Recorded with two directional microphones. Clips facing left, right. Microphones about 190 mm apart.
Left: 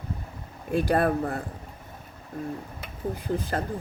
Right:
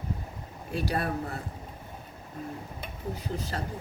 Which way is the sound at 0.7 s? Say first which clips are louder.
Left 7 dB; 50° left (ahead or behind).